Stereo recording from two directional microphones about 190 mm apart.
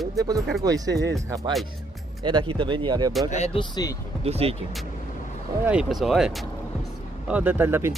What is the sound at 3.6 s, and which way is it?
Speech, 20° left (ahead or behind).